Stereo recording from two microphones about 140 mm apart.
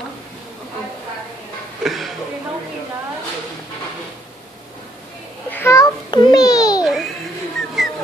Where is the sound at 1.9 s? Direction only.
Centre (ahead or behind).